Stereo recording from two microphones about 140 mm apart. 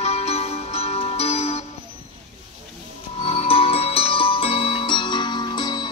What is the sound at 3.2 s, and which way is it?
Music, 45° left (ahead or behind).